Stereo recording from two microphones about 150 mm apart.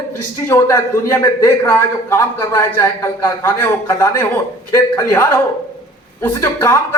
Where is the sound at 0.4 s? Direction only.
20° left (ahead or behind).